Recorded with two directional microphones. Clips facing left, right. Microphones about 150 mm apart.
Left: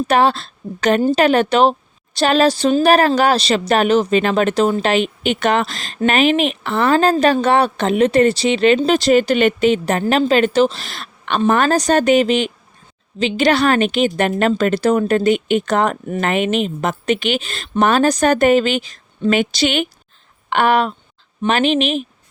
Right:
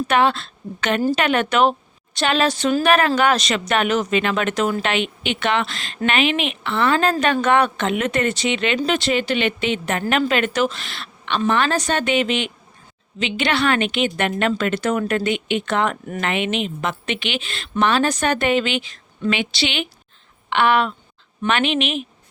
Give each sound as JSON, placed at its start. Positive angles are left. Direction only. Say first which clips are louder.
{"t": 0.1, "sound": "a woman's voice", "louder": "left 3 dB", "side_deg": 35}